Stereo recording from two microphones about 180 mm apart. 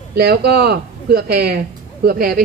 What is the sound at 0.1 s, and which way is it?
A man's voice, 60° right (ahead or behind).